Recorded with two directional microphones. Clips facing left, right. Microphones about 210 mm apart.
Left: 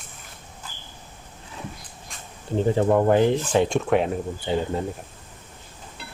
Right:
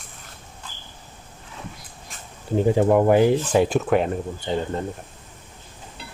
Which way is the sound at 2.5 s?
10° right (ahead or behind).